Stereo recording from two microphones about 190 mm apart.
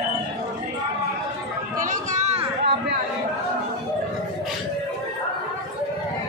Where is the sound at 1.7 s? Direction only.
45° right (ahead or behind).